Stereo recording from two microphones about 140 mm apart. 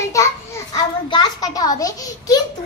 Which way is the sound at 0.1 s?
20° left (ahead or behind).